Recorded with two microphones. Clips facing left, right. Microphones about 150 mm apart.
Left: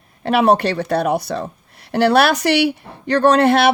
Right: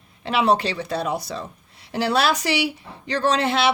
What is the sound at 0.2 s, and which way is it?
Speech, 55° left (ahead or behind).